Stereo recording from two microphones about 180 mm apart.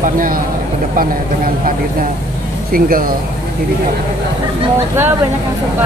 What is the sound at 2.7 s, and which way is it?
Speech, 50° right (ahead or behind).